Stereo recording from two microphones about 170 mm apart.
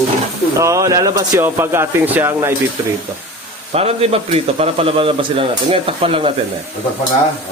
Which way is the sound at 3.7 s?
35° right (ahead or behind).